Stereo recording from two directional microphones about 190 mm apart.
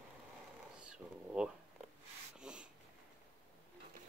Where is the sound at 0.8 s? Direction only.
5° right (ahead or behind).